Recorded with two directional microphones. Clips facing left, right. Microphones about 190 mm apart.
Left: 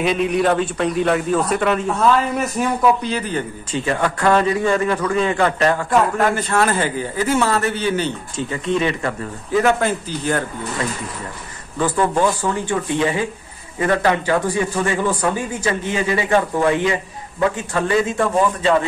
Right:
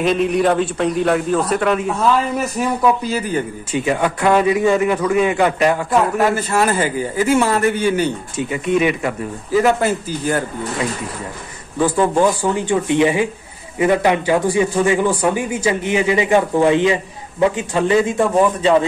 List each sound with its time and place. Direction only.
0.0 s a man's voice: centre (ahead or behind)
11.8 s a man's voice: 10° right (ahead or behind)